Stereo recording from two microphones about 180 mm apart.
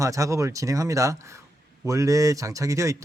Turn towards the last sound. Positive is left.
turn(degrees=-15)  # may be behind; listen again after turning